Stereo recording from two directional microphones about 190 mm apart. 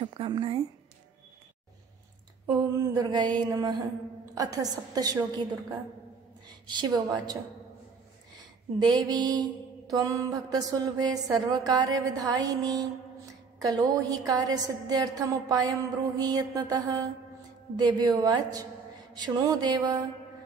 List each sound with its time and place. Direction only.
0.0 s a sound: 25° right (ahead or behind)
2.4 s mantra: 20° right (ahead or behind)
6.7 s mantra: 20° right (ahead or behind)
8.7 s mantra: 20° right (ahead or behind)